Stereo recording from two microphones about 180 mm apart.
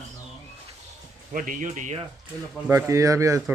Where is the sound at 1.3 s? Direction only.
45° right (ahead or behind).